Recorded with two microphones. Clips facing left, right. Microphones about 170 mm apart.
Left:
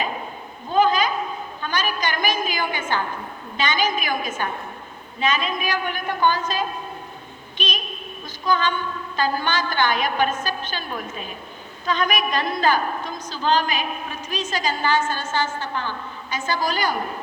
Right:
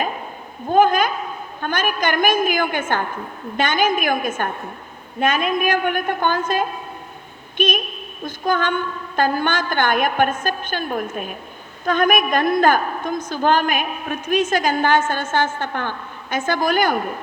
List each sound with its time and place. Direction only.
0.7 s a sound: 55° right (ahead or behind)
1.6 s a woman's voice: 55° right (ahead or behind)
8.2 s a woman's voice: 55° right (ahead or behind)